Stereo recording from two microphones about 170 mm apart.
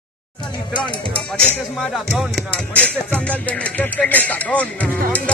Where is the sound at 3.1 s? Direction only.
5° left (ahead or behind).